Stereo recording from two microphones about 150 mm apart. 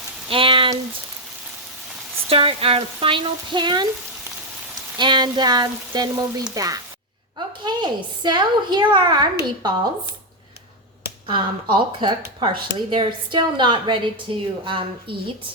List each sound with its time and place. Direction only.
0.3 s a woman's voice: 35° right (ahead or behind)
2.3 s a woman's voice: 40° right (ahead or behind)
4.9 s a woman's voice: 30° right (ahead or behind)
11.3 s a woman's voice: 35° right (ahead or behind)